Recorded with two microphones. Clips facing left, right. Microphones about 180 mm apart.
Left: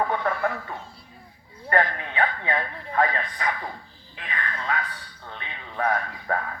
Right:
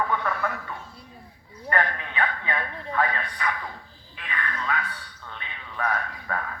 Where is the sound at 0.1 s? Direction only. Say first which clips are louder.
Left 2 dB; 45° left (ahead or behind).